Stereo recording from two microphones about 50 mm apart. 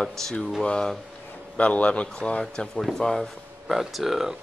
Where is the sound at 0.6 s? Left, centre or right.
Centre.